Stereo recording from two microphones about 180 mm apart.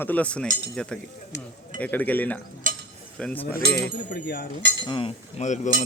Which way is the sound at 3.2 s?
10° left (ahead or behind).